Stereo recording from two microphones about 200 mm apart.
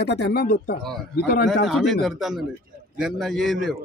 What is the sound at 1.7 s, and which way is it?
A man's voice, centre (ahead or behind).